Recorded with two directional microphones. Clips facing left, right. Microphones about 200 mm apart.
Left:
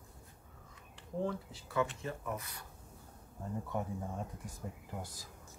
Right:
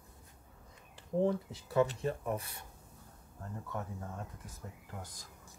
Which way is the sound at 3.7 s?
15° left (ahead or behind).